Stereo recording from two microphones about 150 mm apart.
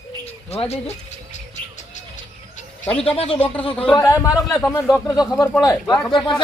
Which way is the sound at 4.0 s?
20° left (ahead or behind).